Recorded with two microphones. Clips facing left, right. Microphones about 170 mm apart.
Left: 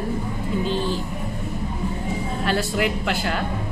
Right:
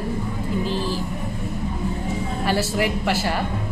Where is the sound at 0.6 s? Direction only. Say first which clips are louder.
Left 2 dB; 25° left (ahead or behind).